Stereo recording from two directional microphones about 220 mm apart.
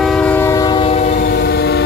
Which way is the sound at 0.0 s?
5° left (ahead or behind).